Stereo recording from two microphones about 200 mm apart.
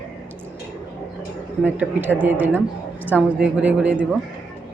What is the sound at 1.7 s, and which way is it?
A woman's voice, 10° right (ahead or behind).